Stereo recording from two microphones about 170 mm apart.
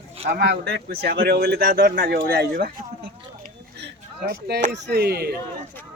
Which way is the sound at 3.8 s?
75° right (ahead or behind).